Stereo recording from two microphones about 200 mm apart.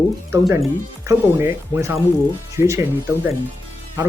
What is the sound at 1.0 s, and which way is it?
Speech, 15° right (ahead or behind).